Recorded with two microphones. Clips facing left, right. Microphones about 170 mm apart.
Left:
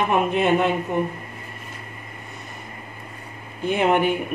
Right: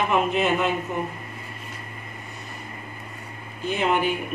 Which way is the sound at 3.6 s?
55° left (ahead or behind).